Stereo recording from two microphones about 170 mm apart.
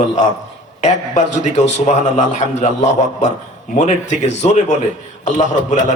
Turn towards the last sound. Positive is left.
turn(degrees=45)  # may be behind; listen again after turning